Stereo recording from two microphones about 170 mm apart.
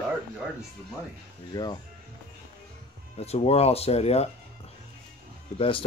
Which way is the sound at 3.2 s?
35° left (ahead or behind).